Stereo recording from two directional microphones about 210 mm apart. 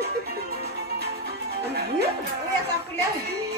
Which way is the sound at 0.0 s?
45° right (ahead or behind).